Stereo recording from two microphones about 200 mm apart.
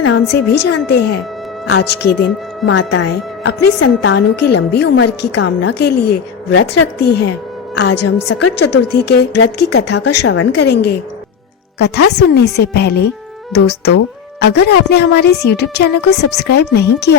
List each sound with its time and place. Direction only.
0.0 s a woman's voice: 65° left (ahead or behind)
2.6 s a woman's voice: 70° left (ahead or behind)
4.0 s a woman's voice: 60° left (ahead or behind)
10.2 s a woman's voice: 70° left (ahead or behind)